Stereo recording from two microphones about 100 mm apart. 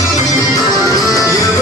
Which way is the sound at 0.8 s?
35° left (ahead or behind).